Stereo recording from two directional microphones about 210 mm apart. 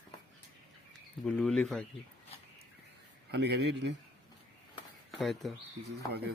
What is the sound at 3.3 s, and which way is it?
Speech, 55° right (ahead or behind).